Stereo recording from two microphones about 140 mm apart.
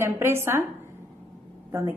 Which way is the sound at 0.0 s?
20° right (ahead or behind).